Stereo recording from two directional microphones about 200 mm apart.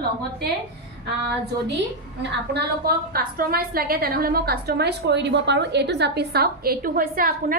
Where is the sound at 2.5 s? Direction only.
50° right (ahead or behind).